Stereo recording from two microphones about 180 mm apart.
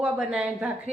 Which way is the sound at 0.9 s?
35° right (ahead or behind).